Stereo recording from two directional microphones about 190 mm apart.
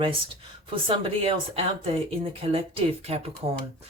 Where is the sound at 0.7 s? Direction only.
30° right (ahead or behind).